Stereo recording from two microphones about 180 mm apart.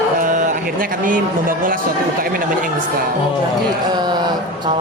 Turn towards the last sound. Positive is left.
turn(degrees=-25)  # may be behind; listen again after turning